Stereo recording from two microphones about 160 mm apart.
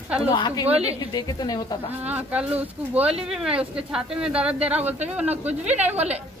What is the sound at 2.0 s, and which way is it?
Speech, 10° right (ahead or behind).